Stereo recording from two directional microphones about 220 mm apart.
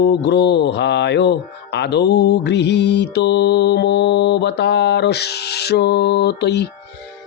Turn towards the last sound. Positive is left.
turn(degrees=50)  # may be behind; listen again after turning